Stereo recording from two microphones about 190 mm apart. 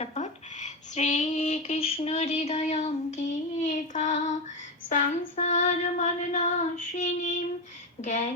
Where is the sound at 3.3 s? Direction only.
40° left (ahead or behind).